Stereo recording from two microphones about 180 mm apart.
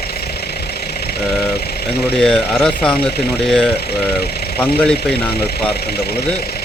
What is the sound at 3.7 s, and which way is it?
Speech, 60° left (ahead or behind).